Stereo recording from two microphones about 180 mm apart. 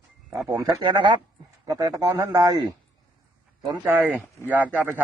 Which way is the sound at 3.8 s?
10° right (ahead or behind).